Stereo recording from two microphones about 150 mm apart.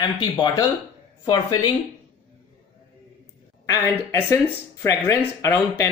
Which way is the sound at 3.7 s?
20° left (ahead or behind).